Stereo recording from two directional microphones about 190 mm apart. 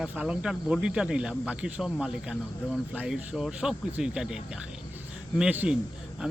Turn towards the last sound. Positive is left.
turn(degrees=-5)  # may be behind; listen again after turning